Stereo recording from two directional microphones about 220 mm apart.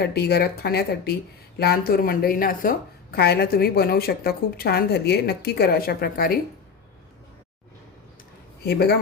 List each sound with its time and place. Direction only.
0.0 s a woman's voice: 45° left (ahead or behind)
8.6 s a woman's voice: 45° left (ahead or behind)